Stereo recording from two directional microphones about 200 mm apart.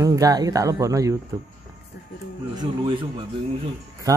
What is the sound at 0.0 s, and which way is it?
Speech, 15° right (ahead or behind).